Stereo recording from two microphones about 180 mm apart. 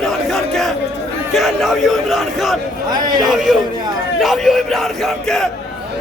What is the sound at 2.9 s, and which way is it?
Speech, 25° right (ahead or behind).